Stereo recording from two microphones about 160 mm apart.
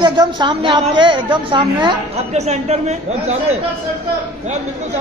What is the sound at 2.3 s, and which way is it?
Speech, 45° right (ahead or behind).